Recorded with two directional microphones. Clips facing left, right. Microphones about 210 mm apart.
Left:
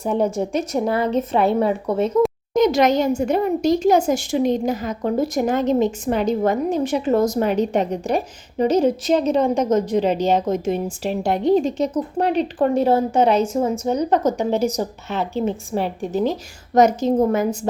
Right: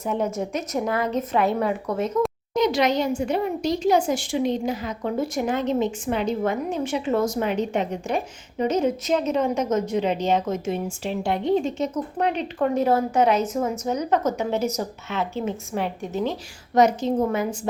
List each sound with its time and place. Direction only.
0.0 s a woman's voice: 35° left (ahead or behind)
2.6 s a woman's voice: 45° left (ahead or behind)